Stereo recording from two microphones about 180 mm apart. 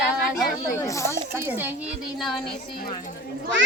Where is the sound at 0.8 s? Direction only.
15° left (ahead or behind).